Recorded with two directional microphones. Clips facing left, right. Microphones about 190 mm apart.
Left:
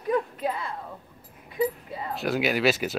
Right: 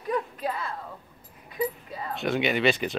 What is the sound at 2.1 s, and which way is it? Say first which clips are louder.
Speech: even; centre (ahead or behind).